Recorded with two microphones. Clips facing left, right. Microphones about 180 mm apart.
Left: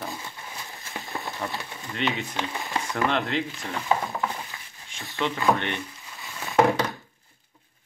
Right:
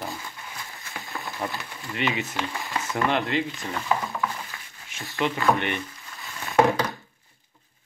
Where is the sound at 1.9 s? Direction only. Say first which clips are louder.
Right 1 dB; centre (ahead or behind).